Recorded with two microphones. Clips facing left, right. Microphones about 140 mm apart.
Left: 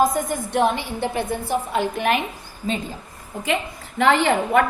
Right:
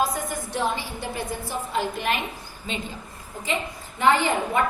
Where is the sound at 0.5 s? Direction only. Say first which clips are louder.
Left 7 dB; 60° left (ahead or behind).